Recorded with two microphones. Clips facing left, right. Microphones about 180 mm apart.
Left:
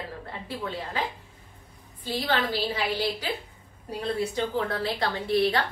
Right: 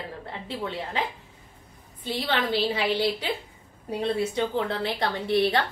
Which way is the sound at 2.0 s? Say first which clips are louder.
Even; 25° right (ahead or behind).